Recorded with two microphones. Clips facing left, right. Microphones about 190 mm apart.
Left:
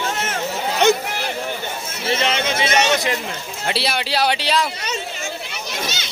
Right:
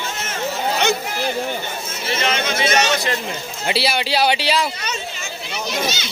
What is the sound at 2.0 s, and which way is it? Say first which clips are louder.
Speech: left 1 dB; 30° left (ahead or behind).